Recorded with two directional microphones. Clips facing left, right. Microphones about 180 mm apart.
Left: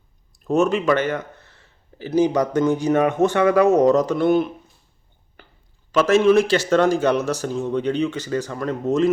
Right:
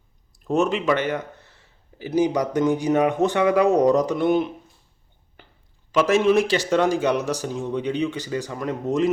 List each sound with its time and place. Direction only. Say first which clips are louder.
0.4 s a man's voice: left 3 dB; 15° right (ahead or behind)
5.4 s a sound: left 1 dB; 20° right (ahead or behind)
5.9 s a man's voice: left 3 dB; 15° right (ahead or behind)